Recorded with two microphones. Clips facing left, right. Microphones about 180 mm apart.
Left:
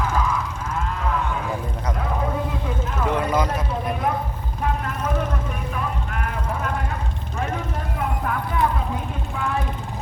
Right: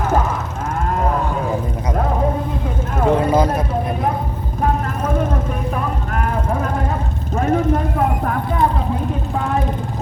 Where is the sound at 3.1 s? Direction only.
30° right (ahead or behind).